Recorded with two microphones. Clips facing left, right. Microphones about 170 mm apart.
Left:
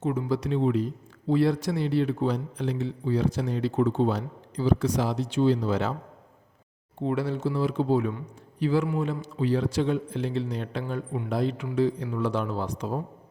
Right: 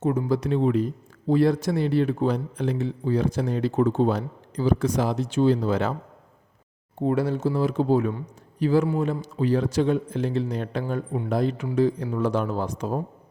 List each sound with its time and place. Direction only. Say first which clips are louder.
0.0 s a man's voice: right 3 dB; 45° right (ahead or behind)
7.0 s a man's voice: right 4 dB; 45° right (ahead or behind)